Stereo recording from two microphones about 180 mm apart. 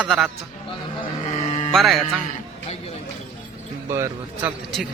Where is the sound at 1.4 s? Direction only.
35° left (ahead or behind).